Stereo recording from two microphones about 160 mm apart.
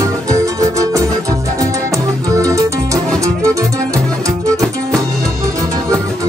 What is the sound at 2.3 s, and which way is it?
Music, 20° right (ahead or behind).